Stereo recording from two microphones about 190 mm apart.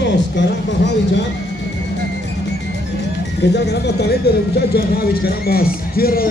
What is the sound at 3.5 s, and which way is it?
Speech, 60° left (ahead or behind).